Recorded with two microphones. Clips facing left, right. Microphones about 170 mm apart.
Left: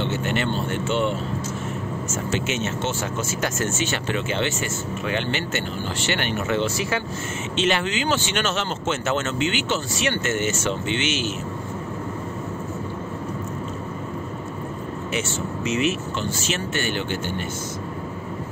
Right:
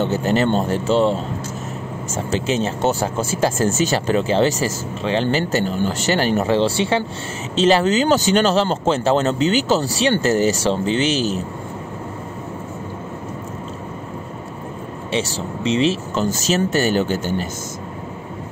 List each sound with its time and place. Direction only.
0.0 s speech: 35° right (ahead or behind)
15.1 s speech: 30° right (ahead or behind)